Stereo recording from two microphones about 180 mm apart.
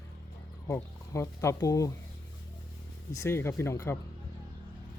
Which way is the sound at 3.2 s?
15° left (ahead or behind).